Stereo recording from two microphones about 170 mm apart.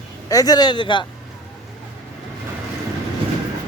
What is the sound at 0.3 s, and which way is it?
Speech, 20° left (ahead or behind).